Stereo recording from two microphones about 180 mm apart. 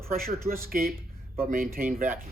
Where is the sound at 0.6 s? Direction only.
55° right (ahead or behind).